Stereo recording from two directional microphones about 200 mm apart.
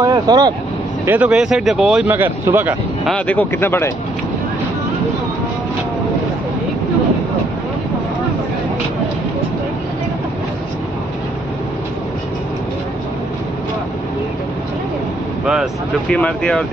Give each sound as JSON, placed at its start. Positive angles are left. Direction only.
{"t": 0.0, "sound": "speech", "side_deg": -20}
{"t": 1.0, "sound": "speech", "side_deg": -10}
{"t": 3.1, "sound": "speech", "side_deg": 5}
{"t": 15.4, "sound": "speech", "side_deg": -5}